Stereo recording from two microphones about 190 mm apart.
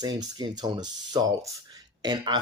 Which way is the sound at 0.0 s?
20° right (ahead or behind).